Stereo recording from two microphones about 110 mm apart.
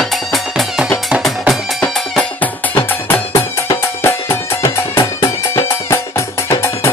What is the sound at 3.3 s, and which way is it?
Music, 25° left (ahead or behind).